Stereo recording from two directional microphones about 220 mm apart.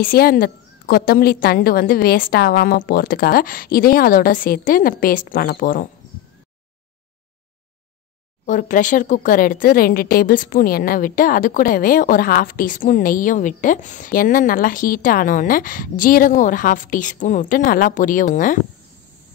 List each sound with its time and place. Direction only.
0.0 s speech: 40° left (ahead or behind)
8.5 s speech: 35° left (ahead or behind)